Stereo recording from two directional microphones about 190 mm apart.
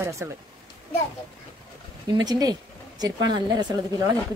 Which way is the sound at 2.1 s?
20° right (ahead or behind).